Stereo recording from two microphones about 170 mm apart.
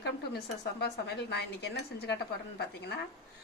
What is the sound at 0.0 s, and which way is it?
A woman's voice, 75° left (ahead or behind).